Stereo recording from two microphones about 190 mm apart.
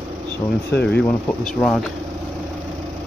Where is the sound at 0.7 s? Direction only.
60° left (ahead or behind).